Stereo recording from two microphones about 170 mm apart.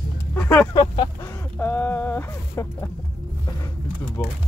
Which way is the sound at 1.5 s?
10° left (ahead or behind).